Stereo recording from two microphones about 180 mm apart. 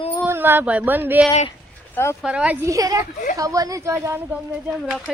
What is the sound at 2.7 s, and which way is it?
Speech, 20° right (ahead or behind).